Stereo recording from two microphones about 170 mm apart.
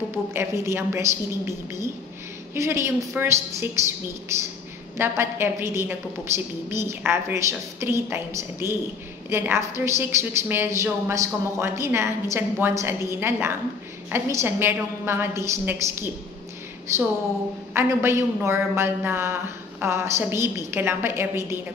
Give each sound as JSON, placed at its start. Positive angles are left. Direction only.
{"t": 0.1, "sound": "a woman's voice", "side_deg": -15}